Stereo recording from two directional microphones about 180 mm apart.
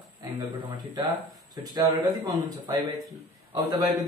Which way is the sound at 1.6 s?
25° right (ahead or behind).